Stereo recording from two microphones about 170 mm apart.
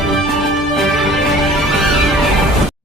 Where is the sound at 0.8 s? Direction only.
Centre (ahead or behind).